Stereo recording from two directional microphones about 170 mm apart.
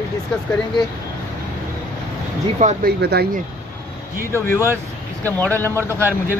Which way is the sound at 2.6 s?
45° right (ahead or behind).